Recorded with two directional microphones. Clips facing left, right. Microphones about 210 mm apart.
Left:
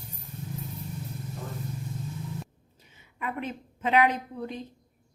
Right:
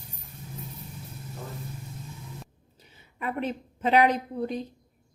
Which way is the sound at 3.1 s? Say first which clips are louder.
Right 3 dB; 35° right (ahead or behind).